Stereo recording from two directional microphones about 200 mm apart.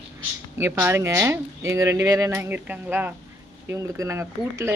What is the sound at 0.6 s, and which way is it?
Speech, 15° right (ahead or behind).